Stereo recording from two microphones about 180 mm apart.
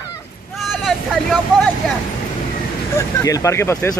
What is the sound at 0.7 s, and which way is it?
Speech, centre (ahead or behind).